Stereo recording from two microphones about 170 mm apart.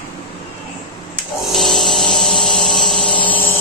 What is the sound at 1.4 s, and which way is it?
Dental drill, centre (ahead or behind).